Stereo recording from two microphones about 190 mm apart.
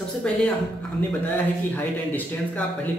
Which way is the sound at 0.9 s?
10° left (ahead or behind).